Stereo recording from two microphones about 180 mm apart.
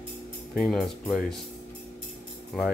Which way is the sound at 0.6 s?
Centre (ahead or behind).